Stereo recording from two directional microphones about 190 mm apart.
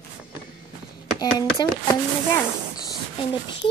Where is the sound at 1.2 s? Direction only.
20° left (ahead or behind).